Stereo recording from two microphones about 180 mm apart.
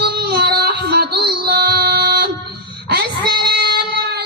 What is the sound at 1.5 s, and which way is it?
Music, 60° right (ahead or behind).